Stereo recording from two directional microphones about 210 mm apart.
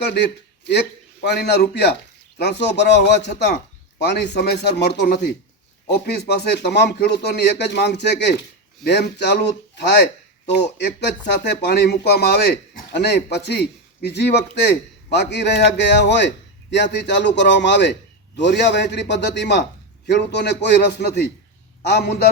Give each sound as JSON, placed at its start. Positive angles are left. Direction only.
{"t": 0.0, "sound": "a man's voice", "side_deg": 50}
{"t": 11.4, "sound": "a man's voice", "side_deg": 50}